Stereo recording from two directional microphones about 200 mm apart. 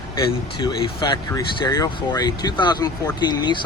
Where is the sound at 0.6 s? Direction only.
20° left (ahead or behind).